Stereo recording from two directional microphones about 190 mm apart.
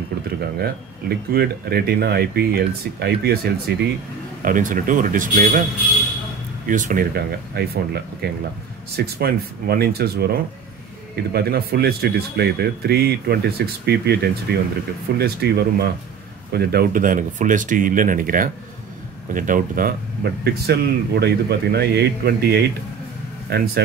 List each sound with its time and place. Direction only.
0.6 s speech: 55° right (ahead or behind)
4.5 s speech: 45° right (ahead or behind)
6.7 s speech: 45° right (ahead or behind)
20.4 s speech: 60° right (ahead or behind)